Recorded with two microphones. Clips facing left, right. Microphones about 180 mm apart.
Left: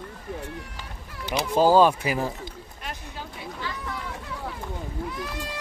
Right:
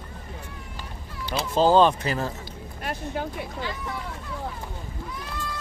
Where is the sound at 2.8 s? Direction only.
55° right (ahead or behind).